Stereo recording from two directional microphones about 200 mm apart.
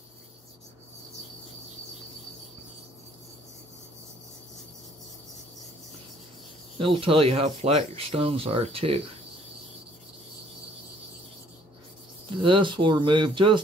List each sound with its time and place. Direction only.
6.8 s speech: 25° right (ahead or behind)
12.4 s speech: 25° right (ahead or behind)